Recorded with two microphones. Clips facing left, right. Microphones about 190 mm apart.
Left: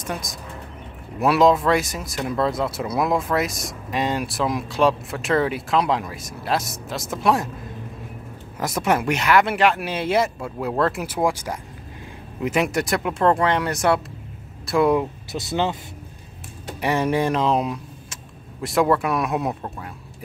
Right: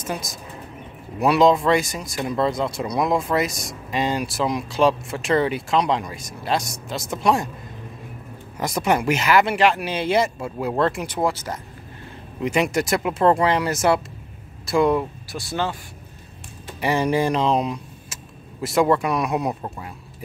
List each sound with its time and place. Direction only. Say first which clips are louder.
0.0 s speech: right 1 dB; centre (ahead or behind)
8.5 s speech: even; centre (ahead or behind)
15.3 s speech: left 2 dB; 20° left (ahead or behind)
16.8 s speech: right 1 dB; centre (ahead or behind)